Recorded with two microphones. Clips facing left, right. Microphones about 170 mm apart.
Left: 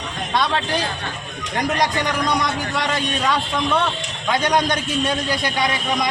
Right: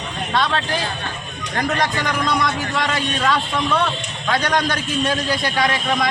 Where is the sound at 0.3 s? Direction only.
15° left (ahead or behind).